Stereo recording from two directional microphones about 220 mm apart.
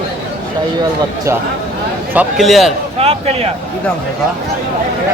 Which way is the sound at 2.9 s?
25° right (ahead or behind).